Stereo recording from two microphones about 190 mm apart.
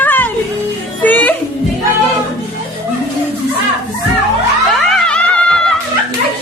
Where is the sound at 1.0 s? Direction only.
10° left (ahead or behind).